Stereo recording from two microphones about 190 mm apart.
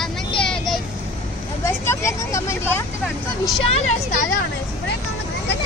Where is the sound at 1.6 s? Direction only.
15° left (ahead or behind).